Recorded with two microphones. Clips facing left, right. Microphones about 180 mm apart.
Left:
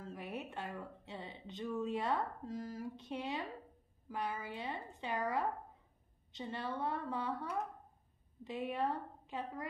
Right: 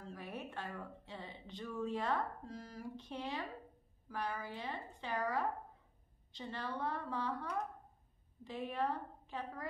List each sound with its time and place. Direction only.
0.0 s a woman's voice: 20° left (ahead or behind)
8.5 s a woman's voice: 15° left (ahead or behind)